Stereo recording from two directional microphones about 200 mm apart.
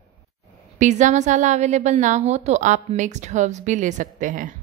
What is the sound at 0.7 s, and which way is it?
A woman's voice, 35° right (ahead or behind).